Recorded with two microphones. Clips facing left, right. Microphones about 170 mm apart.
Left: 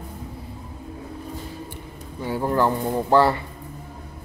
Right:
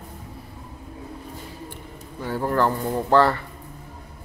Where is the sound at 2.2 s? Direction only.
15° left (ahead or behind).